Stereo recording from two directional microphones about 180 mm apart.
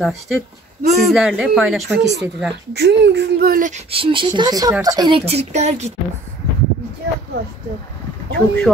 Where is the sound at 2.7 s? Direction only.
70° right (ahead or behind); by 3.8 s 50° right (ahead or behind).